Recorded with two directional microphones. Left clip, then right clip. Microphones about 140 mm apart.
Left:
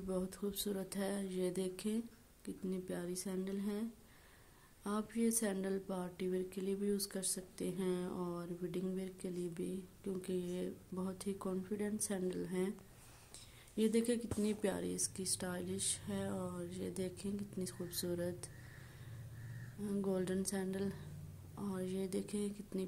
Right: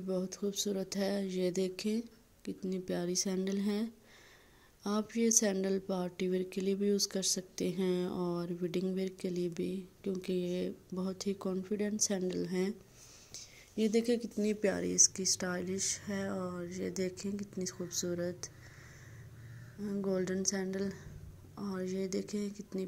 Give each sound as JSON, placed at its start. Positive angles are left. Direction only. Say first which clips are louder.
{"t": 0.0, "sound": "speech", "louder": "right 5 dB", "side_deg": -20}
{"t": 4.8, "sound": "speech", "louder": "right 6 dB", "side_deg": -30}
{"t": 13.7, "sound": "speech", "louder": "right 4 dB", "side_deg": -15}
{"t": 19.8, "sound": "speech", "louder": "right 4 dB", "side_deg": -20}